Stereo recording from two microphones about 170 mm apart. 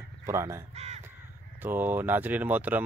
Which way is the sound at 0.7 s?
40° right (ahead or behind).